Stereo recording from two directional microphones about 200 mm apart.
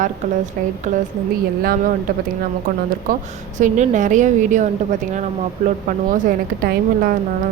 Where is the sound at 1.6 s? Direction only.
45° right (ahead or behind).